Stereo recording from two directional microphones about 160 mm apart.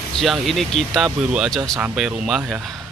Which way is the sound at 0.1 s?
Centre (ahead or behind).